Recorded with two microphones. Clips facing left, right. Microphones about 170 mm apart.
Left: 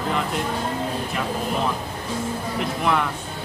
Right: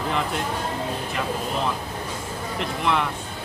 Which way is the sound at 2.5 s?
5° left (ahead or behind).